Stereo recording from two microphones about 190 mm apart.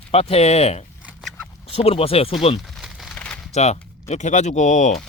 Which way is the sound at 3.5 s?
35° left (ahead or behind).